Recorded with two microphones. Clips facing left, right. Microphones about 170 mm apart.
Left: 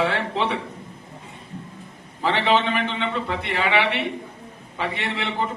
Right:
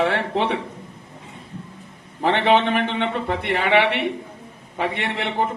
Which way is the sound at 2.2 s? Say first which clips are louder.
Right 3 dB; 60° right (ahead or behind).